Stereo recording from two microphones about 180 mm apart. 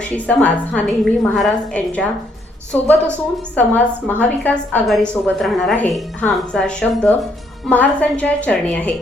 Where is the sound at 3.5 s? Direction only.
10° left (ahead or behind).